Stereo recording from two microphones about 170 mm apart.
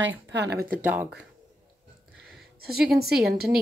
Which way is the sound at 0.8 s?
10° right (ahead or behind).